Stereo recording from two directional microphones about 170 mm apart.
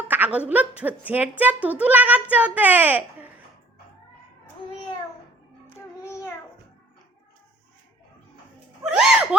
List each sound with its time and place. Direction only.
0.1 s a woman's voice: 10° right (ahead or behind)
5.6 s music: 15° left (ahead or behind)
8.8 s a sound: 5° right (ahead or behind)